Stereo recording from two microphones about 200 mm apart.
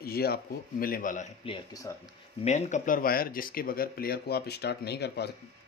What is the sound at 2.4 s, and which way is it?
Speech, 35° left (ahead or behind).